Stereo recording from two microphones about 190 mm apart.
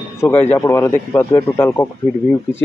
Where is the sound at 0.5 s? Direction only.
15° left (ahead or behind).